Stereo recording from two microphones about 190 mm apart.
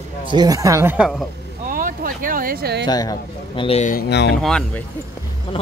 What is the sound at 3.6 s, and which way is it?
Speech, 35° left (ahead or behind).